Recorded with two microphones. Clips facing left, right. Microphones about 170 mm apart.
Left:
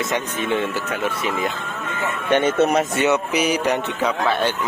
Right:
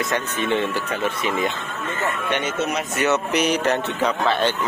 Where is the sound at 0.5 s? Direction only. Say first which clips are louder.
Even; 10° left (ahead or behind).